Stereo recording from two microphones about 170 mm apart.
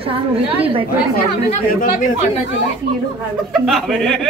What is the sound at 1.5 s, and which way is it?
Speech, 50° left (ahead or behind).